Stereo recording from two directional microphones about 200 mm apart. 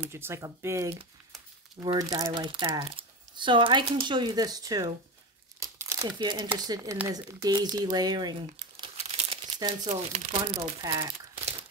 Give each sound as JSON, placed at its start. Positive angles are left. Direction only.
{"t": 0.1, "sound": "speech", "side_deg": -15}
{"t": 5.6, "sound": "crumpling", "side_deg": -15}
{"t": 6.6, "sound": "speech", "side_deg": -20}
{"t": 8.7, "sound": "crumpling", "side_deg": -25}
{"t": 9.8, "sound": "speech", "side_deg": -30}
{"t": 10.8, "sound": "speech", "side_deg": -15}